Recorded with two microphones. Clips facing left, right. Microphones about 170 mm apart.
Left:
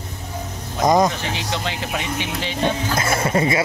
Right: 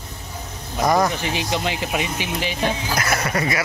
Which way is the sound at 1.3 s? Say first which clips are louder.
Right 2 dB; 15° right (ahead or behind).